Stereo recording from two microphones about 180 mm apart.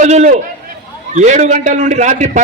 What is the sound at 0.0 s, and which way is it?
A man's voice, 40° right (ahead or behind).